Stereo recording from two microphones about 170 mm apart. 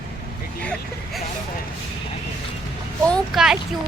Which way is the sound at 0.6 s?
5° left (ahead or behind).